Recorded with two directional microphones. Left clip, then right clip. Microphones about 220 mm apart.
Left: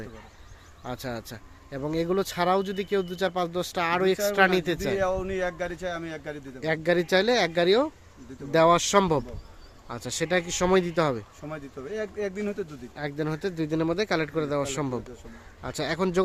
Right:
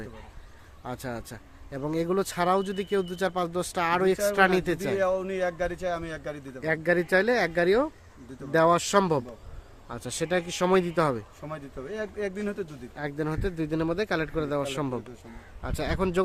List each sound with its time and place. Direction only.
0.9 s speech: 5° left (ahead or behind)
4.9 s a man's voice: 15° right (ahead or behind)
6.6 s speech: 10° left (ahead or behind)
11.4 s a man's voice: 15° right (ahead or behind)
13.0 s speech: 5° left (ahead or behind)